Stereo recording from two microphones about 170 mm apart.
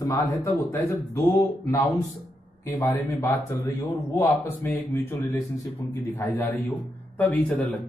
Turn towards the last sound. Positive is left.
turn(degrees=10)  # may be behind; listen again after turning